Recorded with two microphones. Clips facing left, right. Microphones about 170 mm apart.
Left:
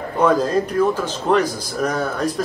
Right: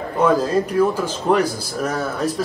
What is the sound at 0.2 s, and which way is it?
A man's voice, 10° right (ahead or behind).